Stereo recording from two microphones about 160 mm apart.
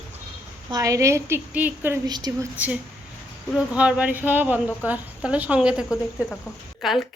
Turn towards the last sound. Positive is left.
turn(degrees=0)  # may be behind; listen again after turning